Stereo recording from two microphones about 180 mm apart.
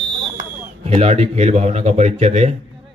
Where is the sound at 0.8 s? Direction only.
35° right (ahead or behind).